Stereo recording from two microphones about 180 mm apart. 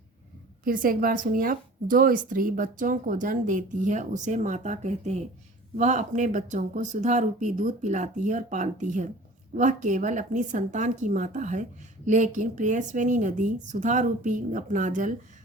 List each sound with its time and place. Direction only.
0.6 s speech: 50° right (ahead or behind)